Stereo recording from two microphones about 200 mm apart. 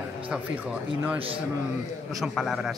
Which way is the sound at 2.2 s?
Centre (ahead or behind).